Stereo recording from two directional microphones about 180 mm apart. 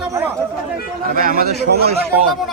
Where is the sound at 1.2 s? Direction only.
55° right (ahead or behind).